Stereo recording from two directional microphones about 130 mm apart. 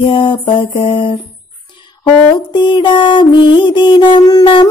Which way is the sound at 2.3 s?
35° left (ahead or behind).